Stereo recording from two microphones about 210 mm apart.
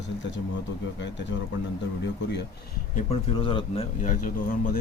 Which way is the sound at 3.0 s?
25° left (ahead or behind).